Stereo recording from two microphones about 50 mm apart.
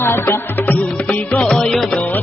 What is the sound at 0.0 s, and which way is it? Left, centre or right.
Music, left.